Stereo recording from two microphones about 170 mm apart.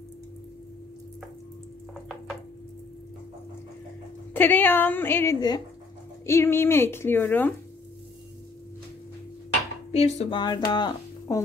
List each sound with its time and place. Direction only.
4.3 s a woman's voice: 10° left (ahead or behind)
9.9 s speech: 40° left (ahead or behind)
10.4 s speech: 25° left (ahead or behind)